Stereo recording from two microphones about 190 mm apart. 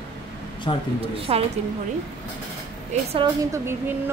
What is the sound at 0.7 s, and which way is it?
Speech, 25° left (ahead or behind).